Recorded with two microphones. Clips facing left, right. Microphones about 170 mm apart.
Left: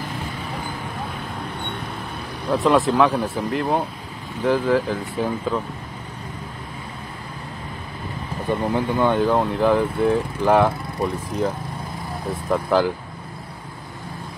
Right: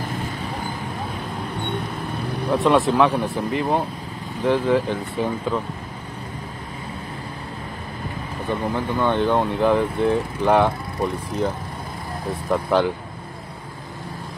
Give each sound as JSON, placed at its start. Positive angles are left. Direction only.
{"t": 2.5, "sound": "speech", "side_deg": 0}
{"t": 8.7, "sound": "speech", "side_deg": 15}